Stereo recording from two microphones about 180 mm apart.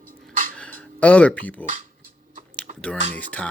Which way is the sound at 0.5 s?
5° left (ahead or behind).